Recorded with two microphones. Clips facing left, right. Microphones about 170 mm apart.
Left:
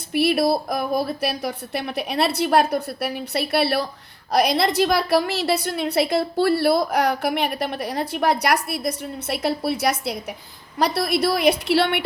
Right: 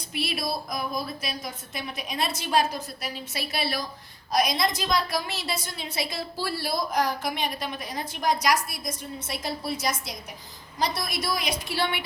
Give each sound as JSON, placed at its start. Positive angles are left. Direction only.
{"t": 0.1, "sound": "a woman's voice", "side_deg": 60}